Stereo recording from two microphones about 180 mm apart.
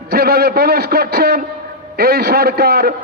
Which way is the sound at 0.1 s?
60° right (ahead or behind).